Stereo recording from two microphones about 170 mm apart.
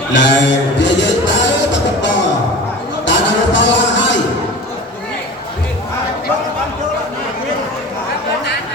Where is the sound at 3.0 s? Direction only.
90° left.